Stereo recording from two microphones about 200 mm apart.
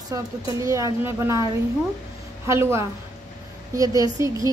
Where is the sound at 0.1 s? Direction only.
15° right (ahead or behind).